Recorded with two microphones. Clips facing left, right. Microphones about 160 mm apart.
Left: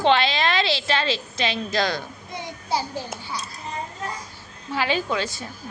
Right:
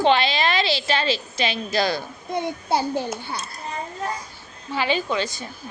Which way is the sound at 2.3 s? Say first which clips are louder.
Right 5 dB; 55° right (ahead or behind).